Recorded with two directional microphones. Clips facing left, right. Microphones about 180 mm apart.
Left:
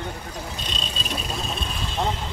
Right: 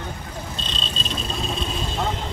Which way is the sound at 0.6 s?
10° left (ahead or behind).